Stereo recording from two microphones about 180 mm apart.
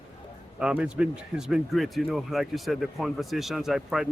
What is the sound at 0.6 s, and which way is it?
Speech, 5° right (ahead or behind).